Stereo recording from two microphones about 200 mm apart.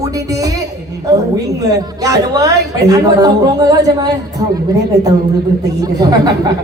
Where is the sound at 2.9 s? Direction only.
20° right (ahead or behind).